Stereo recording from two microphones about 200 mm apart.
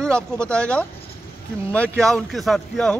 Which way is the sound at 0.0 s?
5° left (ahead or behind).